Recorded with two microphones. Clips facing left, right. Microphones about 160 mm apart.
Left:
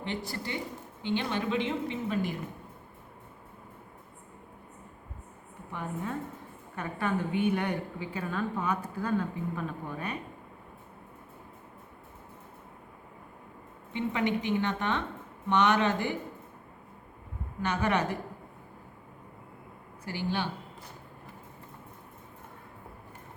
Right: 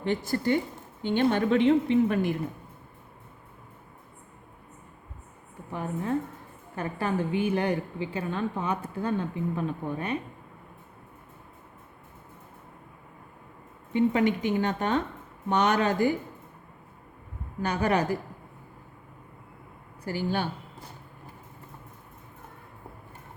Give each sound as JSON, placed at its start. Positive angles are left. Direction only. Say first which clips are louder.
{"t": 0.0, "sound": "a woman's voice", "louder": "right 8 dB", "side_deg": -45}
{"t": 6.7, "sound": "a woman's voice", "louder": "right 3 dB", "side_deg": -30}
{"t": 13.9, "sound": "a woman's voice", "louder": "right 6 dB", "side_deg": -45}
{"t": 17.6, "sound": "a woman's voice", "louder": "right 3 dB", "side_deg": -35}
{"t": 20.1, "sound": "speech", "louder": "right 3 dB", "side_deg": -45}